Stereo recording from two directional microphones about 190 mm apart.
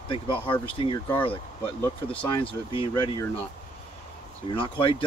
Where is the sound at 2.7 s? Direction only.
25° left (ahead or behind).